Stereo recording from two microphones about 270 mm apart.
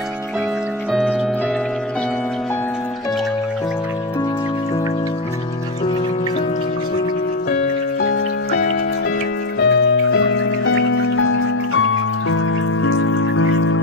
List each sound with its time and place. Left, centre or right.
9.6 s music: left